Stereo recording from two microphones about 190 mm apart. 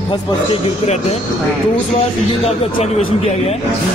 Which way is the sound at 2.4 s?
35° left (ahead or behind).